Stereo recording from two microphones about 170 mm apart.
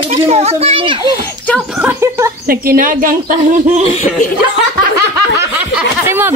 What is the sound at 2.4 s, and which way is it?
Speech, 55° right (ahead or behind).